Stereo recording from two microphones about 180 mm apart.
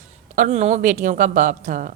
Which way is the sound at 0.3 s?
45° right (ahead or behind).